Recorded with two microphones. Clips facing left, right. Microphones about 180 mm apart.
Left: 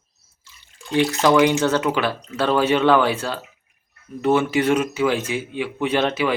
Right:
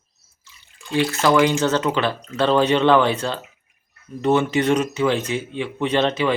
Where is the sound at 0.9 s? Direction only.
20° left (ahead or behind).